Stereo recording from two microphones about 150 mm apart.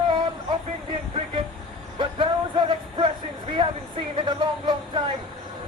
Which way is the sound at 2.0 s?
35° right (ahead or behind).